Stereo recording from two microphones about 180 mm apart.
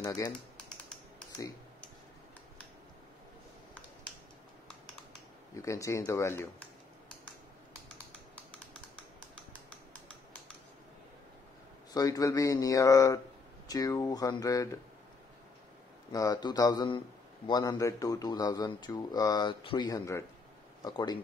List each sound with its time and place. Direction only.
5.6 s speech: 15° left (ahead or behind)
11.9 s speech: 20° left (ahead or behind)
16.1 s speech: 20° left (ahead or behind)